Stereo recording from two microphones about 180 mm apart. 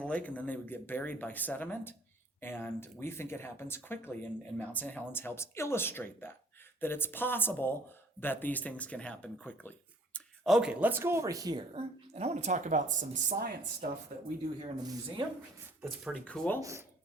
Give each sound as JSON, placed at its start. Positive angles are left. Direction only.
{"t": 0.0, "sound": "speech", "side_deg": 5}
{"t": 11.7, "sound": "a woman's voice", "side_deg": -35}
{"t": 14.6, "sound": "speech", "side_deg": -20}
{"t": 16.0, "sound": "speech", "side_deg": 5}
{"t": 16.6, "sound": "speech", "side_deg": -15}